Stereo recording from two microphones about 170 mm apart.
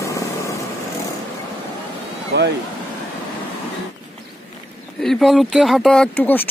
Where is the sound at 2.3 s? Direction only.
90° right.